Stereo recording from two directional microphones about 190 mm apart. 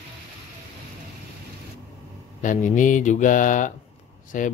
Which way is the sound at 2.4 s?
40° left (ahead or behind).